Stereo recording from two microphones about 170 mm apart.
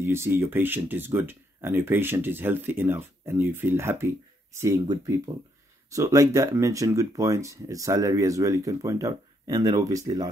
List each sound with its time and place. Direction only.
0.0 s speech: 15° right (ahead or behind)